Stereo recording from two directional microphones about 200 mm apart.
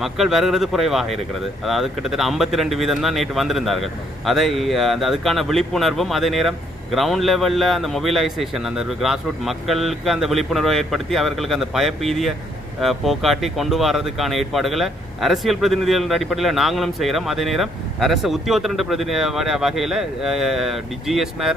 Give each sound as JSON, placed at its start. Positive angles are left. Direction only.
{"t": 0.0, "sound": "speech", "side_deg": 0}